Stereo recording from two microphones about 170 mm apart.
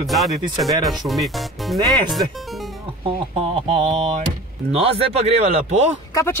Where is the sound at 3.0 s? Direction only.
35° right (ahead or behind).